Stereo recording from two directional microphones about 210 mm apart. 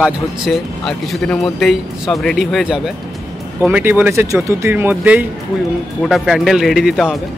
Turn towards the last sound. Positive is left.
turn(degrees=0)  # may be behind; listen again after turning